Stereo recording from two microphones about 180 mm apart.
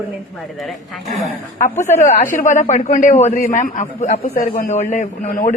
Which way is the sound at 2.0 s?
45° left (ahead or behind).